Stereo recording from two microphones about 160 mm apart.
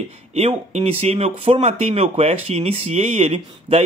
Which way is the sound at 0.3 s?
40° right (ahead or behind).